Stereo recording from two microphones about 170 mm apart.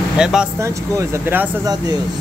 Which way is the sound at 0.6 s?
15° right (ahead or behind).